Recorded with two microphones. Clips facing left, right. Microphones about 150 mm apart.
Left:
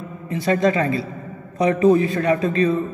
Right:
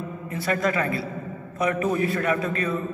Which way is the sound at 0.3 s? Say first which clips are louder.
Left 6 dB; 25° left (ahead or behind).